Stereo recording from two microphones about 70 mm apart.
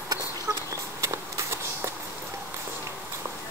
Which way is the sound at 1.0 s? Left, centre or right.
Right.